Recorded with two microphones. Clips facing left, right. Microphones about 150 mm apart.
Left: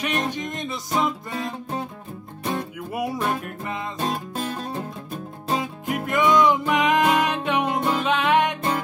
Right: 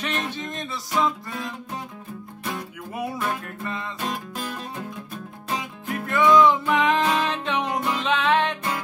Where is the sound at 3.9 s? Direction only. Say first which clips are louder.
Left 3 dB; 35° left (ahead or behind).